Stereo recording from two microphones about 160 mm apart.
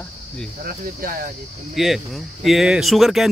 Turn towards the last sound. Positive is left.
turn(degrees=0)  # may be behind; listen again after turning